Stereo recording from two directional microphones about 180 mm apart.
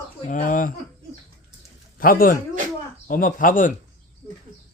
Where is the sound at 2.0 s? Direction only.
55° left (ahead or behind).